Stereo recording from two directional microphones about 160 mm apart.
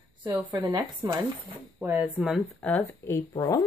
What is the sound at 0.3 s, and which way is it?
Speech, 20° right (ahead or behind).